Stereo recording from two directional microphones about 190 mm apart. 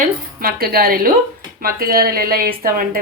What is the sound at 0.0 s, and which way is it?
A woman's voice, 50° right (ahead or behind).